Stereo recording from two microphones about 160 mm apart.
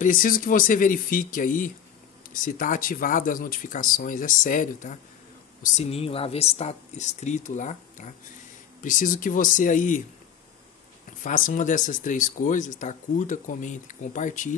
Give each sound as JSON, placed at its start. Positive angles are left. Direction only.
{"t": 0.0, "sound": "speech", "side_deg": 60}
{"t": 5.6, "sound": "speech", "side_deg": 40}
{"t": 11.2, "sound": "speech", "side_deg": 55}